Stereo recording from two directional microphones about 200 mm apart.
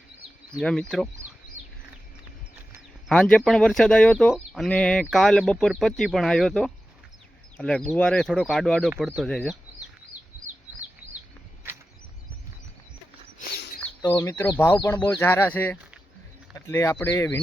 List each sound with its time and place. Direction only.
0.6 s speech: 5° left (ahead or behind)
3.1 s speech: 5° left (ahead or behind)
14.0 s speech: 20° left (ahead or behind)